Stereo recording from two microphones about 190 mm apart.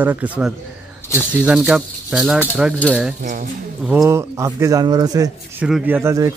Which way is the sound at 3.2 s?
40° right (ahead or behind).